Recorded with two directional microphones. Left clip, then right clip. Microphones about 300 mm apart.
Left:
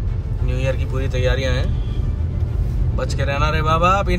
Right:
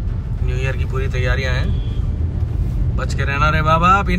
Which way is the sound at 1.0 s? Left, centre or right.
Centre.